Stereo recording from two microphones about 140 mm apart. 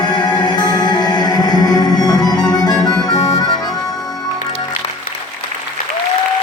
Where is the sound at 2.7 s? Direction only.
25° left (ahead or behind).